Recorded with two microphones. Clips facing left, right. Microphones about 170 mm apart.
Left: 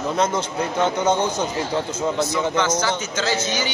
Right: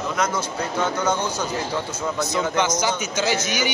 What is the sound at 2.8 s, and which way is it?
Speech, 15° right (ahead or behind).